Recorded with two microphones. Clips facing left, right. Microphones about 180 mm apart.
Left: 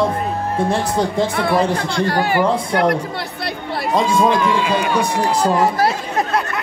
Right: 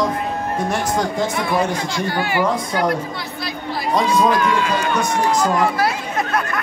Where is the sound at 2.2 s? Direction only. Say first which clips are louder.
Left 2 dB; 50° left (ahead or behind).